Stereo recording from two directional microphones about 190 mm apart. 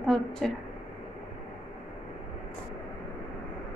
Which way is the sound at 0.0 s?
5° left (ahead or behind).